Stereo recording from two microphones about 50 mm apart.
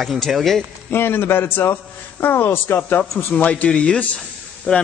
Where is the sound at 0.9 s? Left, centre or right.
Left.